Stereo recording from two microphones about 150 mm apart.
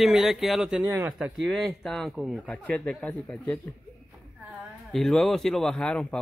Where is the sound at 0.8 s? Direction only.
20° right (ahead or behind).